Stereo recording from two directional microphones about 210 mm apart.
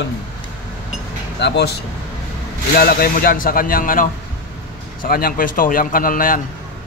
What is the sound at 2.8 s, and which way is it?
A man's voice, 45° left (ahead or behind).